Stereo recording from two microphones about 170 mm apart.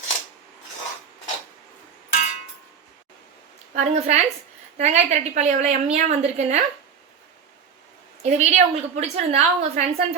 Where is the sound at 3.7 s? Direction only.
40° right (ahead or behind).